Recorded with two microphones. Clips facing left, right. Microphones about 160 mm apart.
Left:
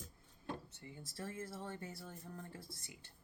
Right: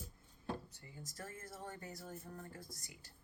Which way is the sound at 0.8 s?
30° left (ahead or behind).